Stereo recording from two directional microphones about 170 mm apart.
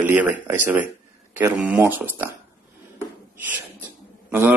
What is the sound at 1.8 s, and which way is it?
Speech, 10° right (ahead or behind).